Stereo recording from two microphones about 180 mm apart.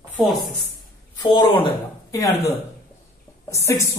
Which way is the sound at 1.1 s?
25° left (ahead or behind).